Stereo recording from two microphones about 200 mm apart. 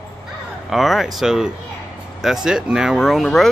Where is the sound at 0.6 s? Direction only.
Centre (ahead or behind).